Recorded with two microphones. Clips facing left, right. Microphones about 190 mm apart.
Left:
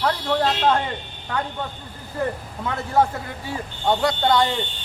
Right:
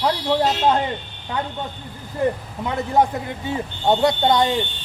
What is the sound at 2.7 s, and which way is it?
A man's voice, 20° right (ahead or behind).